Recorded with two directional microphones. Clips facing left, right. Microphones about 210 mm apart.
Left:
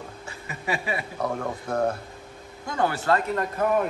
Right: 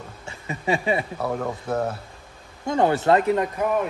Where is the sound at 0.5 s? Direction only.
25° right (ahead or behind).